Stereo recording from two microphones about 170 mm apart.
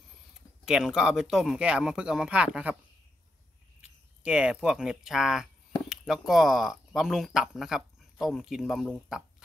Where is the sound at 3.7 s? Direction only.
5° right (ahead or behind).